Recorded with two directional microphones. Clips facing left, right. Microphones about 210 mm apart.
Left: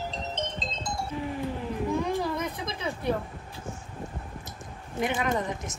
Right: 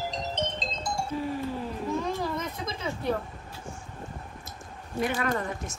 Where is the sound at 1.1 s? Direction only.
15° left (ahead or behind).